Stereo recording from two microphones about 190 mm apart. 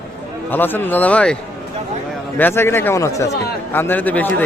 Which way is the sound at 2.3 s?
10° left (ahead or behind).